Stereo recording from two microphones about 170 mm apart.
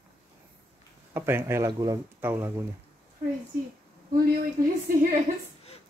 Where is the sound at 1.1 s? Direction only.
15° right (ahead or behind).